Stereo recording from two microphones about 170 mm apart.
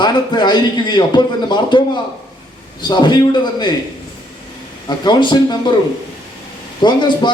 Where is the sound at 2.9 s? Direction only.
25° left (ahead or behind).